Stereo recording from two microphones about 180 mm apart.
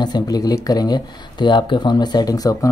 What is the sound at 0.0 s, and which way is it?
Speech, 20° left (ahead or behind).